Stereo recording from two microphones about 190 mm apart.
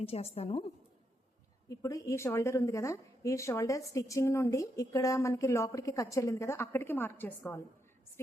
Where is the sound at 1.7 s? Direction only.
15° left (ahead or behind).